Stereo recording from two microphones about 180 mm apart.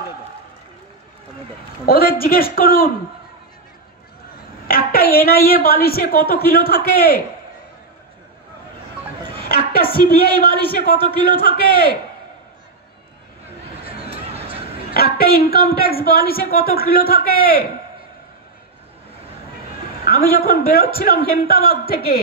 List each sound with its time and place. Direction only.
1.9 s a woman's voice: 55° left (ahead or behind)
4.6 s a woman's voice: 55° left (ahead or behind)
9.5 s a woman's voice: 55° left (ahead or behind)
14.5 s a man's voice: 55° left (ahead or behind)
20.1 s a woman's voice: 55° left (ahead or behind)